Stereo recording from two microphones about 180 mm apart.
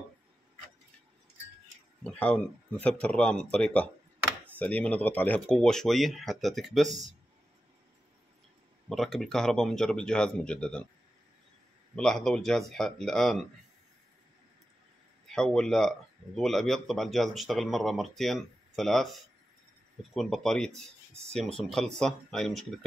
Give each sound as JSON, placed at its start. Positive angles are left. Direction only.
{"t": 2.0, "sound": "speech", "side_deg": 5}
{"t": 8.8, "sound": "speech", "side_deg": 0}
{"t": 11.9, "sound": "speech", "side_deg": 5}
{"t": 15.2, "sound": "speech", "side_deg": 5}
{"t": 20.2, "sound": "speech", "side_deg": 0}